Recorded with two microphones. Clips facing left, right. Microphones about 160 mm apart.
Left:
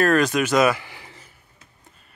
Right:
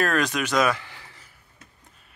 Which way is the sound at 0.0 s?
Centre (ahead or behind).